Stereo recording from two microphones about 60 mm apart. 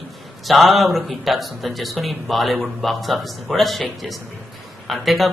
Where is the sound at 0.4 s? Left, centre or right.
Centre.